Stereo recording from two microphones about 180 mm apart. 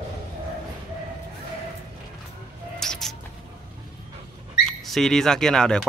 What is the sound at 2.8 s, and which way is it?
Rodents, centre (ahead or behind).